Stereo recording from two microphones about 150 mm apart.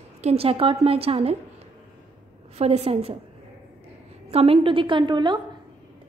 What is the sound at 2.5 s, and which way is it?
Speech, 45° right (ahead or behind).